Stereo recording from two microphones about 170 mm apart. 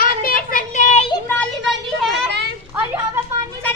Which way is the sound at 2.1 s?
80° right.